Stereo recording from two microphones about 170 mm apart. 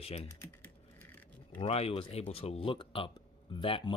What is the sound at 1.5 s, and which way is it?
Speech, 30° left (ahead or behind).